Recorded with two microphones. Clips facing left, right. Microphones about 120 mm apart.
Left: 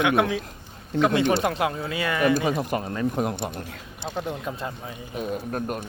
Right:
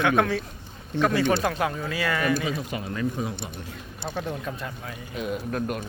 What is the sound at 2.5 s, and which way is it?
Speech, 50° left (ahead or behind).